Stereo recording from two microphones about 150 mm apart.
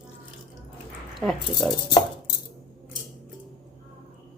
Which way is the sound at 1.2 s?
Centre (ahead or behind).